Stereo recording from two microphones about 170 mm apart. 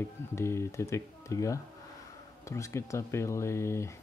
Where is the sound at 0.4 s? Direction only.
15° left (ahead or behind).